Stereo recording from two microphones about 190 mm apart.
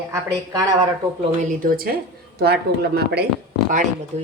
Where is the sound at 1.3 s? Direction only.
45° right (ahead or behind).